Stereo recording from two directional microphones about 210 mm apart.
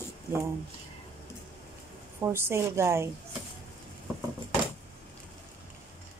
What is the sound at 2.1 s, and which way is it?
Speech, 10° right (ahead or behind).